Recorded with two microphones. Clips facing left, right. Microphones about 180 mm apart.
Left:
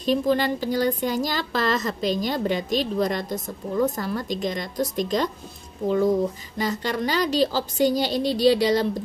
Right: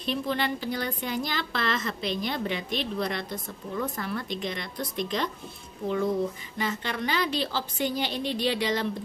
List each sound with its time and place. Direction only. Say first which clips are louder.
0.0 s a woman's voice: left 7 dB; 40° left (ahead or behind)
6.6 s a woman's voice: left 5 dB; 35° left (ahead or behind)